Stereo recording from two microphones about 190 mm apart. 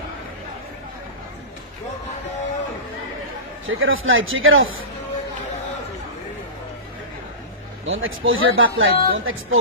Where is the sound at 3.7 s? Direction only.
90° right.